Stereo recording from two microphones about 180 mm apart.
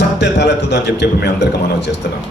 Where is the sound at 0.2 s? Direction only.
75° left (ahead or behind).